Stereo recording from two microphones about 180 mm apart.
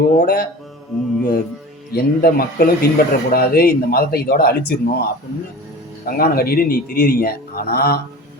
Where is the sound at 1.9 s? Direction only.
60° left (ahead or behind).